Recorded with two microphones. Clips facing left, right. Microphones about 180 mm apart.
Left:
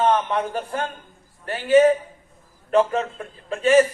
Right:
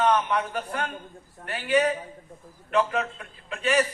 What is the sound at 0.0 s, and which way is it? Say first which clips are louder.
A man's voice: left 3 dB; 40° left (ahead or behind).